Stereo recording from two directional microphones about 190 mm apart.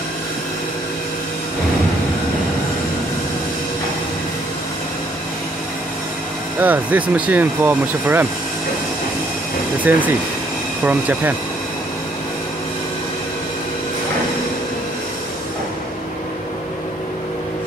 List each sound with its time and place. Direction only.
6.6 s speech: 10° right (ahead or behind)
9.9 s speech: 10° right (ahead or behind)